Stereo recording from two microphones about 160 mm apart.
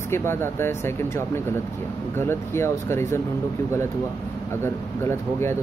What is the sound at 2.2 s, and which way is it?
Speech, 15° left (ahead or behind).